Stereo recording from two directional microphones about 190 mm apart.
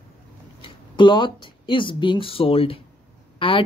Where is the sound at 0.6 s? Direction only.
25° left (ahead or behind).